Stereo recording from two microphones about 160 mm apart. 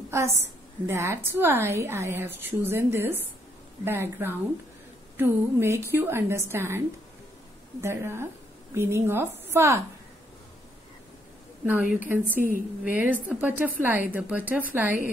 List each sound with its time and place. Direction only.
0.1 s a woman's voice: 15° right (ahead or behind)
7.8 s a woman's voice: 15° right (ahead or behind)
11.6 s a woman's voice: 10° right (ahead or behind)
12.4 s a woman's voice: 60° right (ahead or behind)
12.8 s a woman's voice: 10° right (ahead or behind)